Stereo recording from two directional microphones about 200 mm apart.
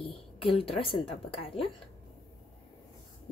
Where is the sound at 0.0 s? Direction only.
25° left (ahead or behind).